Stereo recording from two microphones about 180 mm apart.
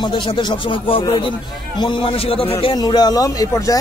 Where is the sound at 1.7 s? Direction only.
30° left (ahead or behind).